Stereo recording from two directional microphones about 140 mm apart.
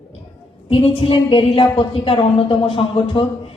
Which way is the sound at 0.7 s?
40° left (ahead or behind).